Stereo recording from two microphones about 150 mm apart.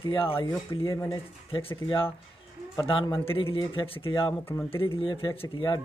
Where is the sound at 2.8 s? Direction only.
35° left (ahead or behind).